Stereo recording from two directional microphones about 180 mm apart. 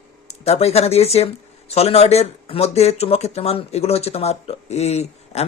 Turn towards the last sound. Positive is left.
turn(degrees=35)  # may be behind; listen again after turning